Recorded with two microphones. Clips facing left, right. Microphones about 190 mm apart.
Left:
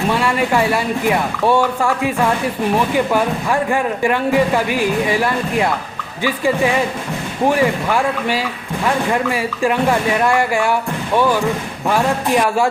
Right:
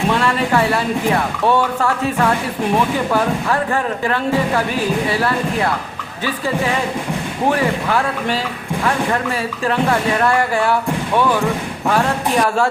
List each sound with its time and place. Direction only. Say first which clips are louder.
0.1 s speech: even; 10° left (ahead or behind)
3.1 s speech: even; 15° left (ahead or behind)
7.5 s speech: left 1 dB; 10° left (ahead or behind)
10.2 s speech: even; 10° left (ahead or behind)
11.9 s speech: left 1 dB; 10° left (ahead or behind)